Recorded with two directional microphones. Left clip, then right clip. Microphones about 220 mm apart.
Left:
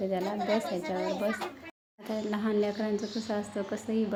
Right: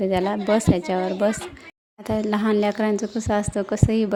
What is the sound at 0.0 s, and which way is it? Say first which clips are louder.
Speech: right 9 dB; 45° right (ahead or behind).